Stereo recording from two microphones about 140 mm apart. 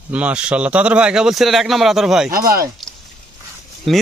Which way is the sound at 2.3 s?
90° right.